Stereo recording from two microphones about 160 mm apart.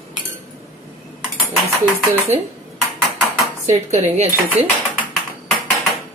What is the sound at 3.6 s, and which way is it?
Speech, 40° right (ahead or behind).